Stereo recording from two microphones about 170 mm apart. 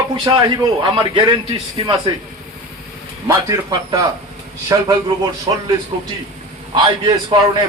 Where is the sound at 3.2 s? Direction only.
20° right (ahead or behind).